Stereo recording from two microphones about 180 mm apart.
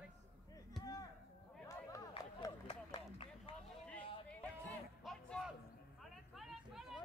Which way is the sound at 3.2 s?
30° left (ahead or behind).